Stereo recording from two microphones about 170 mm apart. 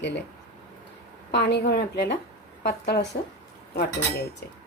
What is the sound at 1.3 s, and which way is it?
Speech, 80° left.